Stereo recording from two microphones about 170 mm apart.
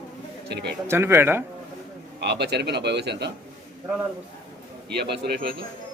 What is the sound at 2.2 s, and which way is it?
Speech, 85° right.